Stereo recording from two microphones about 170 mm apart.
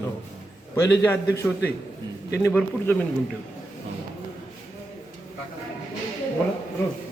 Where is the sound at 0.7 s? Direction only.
15° left (ahead or behind).